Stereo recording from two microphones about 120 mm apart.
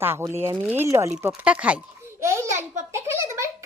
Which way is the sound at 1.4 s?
15° right (ahead or behind).